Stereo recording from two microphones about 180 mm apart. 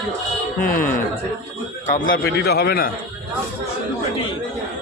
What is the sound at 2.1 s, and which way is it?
Speech, 65° left (ahead or behind).